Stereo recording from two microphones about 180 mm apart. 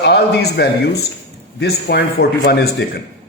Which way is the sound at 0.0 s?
65° left (ahead or behind).